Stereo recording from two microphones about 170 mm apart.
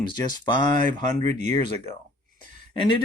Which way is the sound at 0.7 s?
45° right (ahead or behind).